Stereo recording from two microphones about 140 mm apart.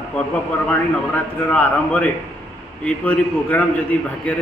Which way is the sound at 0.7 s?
10° left (ahead or behind).